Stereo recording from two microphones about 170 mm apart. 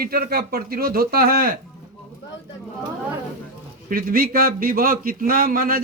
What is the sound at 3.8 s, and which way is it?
Speech, 60° right (ahead or behind).